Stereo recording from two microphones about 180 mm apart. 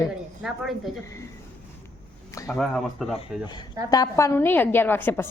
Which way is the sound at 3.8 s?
20° left (ahead or behind).